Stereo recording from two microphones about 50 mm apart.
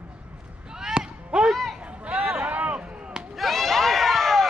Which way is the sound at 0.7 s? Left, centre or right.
Centre.